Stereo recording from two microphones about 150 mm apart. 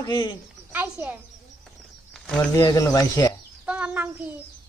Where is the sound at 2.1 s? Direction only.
5° left (ahead or behind).